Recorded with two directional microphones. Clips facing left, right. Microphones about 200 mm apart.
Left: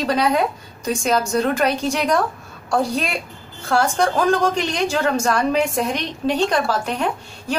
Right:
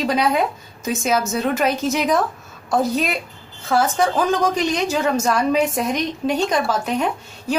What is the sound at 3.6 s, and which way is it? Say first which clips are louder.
A woman's voice: even; 5° right (ahead or behind).